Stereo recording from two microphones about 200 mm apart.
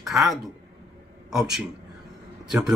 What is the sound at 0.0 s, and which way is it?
Speech, centre (ahead or behind).